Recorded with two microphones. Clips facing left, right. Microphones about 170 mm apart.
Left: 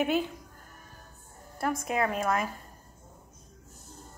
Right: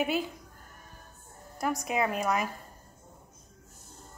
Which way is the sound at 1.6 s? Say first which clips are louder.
Even; 20° right (ahead or behind).